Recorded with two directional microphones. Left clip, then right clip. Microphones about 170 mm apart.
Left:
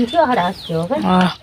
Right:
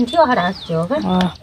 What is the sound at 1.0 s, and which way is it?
Speech, 10° left (ahead or behind).